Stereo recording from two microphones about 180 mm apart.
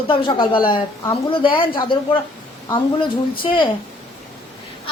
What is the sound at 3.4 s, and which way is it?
Speech, 30° left (ahead or behind).